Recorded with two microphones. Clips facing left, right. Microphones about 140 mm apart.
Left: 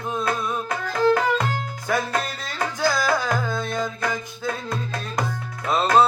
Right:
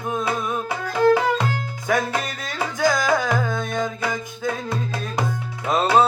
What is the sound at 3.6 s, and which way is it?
Music, 5° left (ahead or behind).